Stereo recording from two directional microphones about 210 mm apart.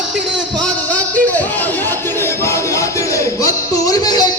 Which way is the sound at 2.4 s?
15° left (ahead or behind).